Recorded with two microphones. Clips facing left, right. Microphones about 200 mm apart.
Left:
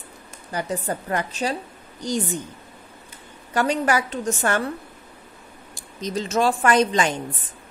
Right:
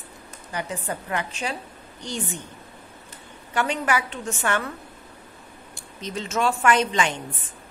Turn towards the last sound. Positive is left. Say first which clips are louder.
# left 3 dB
turn(degrees=40)  # may be behind; listen again after turning